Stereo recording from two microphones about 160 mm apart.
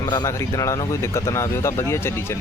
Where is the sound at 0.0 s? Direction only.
25° left (ahead or behind).